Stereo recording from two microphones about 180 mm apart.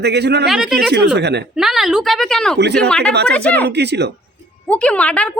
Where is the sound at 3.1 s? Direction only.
65° right (ahead or behind).